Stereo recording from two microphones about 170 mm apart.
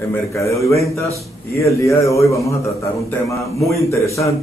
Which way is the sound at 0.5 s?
20° left (ahead or behind).